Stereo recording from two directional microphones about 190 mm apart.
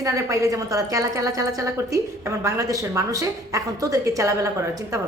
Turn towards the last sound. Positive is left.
turn(degrees=-15)  # may be behind; listen again after turning